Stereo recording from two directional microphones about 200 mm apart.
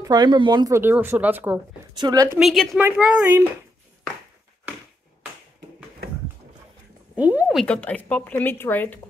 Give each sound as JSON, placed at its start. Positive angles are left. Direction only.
{"t": 0.0, "sound": "speech", "side_deg": -20}
{"t": 2.0, "sound": "a woman's voice", "side_deg": -20}
{"t": 2.3, "sound": "a woman's voice", "side_deg": 0}
{"t": 7.2, "sound": "speech", "side_deg": -5}
{"t": 7.6, "sound": "a woman's voice", "side_deg": 5}